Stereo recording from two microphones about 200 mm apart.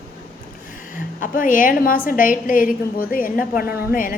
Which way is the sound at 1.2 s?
40° left (ahead or behind).